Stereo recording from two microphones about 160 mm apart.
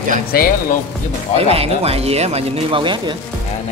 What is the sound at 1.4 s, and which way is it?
Speech, 40° right (ahead or behind).